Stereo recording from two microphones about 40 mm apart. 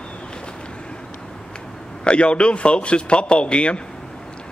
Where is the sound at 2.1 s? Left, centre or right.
Left.